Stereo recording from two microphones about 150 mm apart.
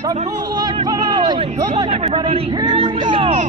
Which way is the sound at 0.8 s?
30° right (ahead or behind).